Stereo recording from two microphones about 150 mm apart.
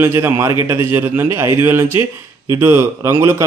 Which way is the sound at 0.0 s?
15° right (ahead or behind).